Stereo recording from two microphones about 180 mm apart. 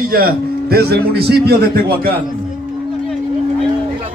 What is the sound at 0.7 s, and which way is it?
Speech, 60° right (ahead or behind).